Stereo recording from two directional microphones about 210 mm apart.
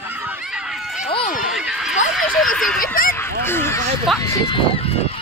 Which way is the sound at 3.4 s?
10° left (ahead or behind).